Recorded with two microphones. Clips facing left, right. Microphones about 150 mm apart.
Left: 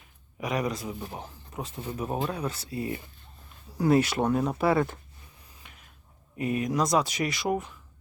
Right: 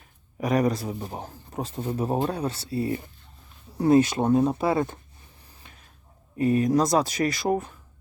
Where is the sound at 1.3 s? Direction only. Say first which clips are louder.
Right 5 dB; 40° right (ahead or behind); by 4.9 s 20° right (ahead or behind).